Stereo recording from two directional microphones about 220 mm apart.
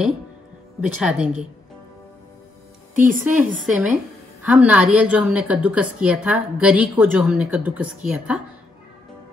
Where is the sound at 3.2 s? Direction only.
10° right (ahead or behind).